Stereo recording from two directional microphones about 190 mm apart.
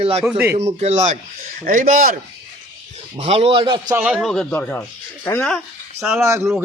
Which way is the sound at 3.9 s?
5° right (ahead or behind).